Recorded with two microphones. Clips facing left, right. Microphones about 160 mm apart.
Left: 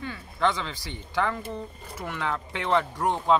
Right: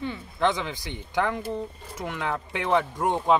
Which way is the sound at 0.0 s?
20° right (ahead or behind).